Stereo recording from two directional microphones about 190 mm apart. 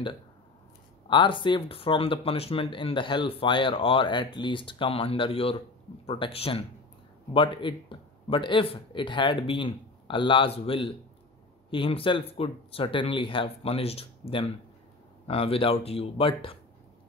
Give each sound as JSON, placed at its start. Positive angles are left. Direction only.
{"t": 1.0, "sound": "speech", "side_deg": 25}